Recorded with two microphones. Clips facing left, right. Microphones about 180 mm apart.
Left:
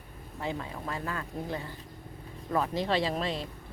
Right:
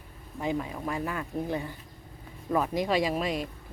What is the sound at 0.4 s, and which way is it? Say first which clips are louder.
Speech: right 5 dB; 15° right (ahead or behind).